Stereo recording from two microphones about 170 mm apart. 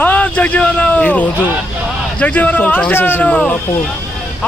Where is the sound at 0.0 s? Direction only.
10° left (ahead or behind).